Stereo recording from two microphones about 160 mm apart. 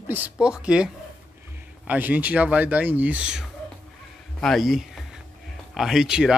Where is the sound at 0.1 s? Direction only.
10° right (ahead or behind).